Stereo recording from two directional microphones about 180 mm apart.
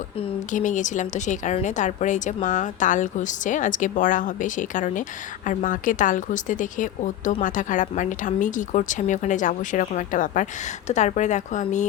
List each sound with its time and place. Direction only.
0.5 s a woman's voice: 45° left (ahead or behind)